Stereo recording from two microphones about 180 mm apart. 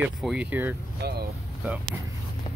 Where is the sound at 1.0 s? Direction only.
65° right (ahead or behind).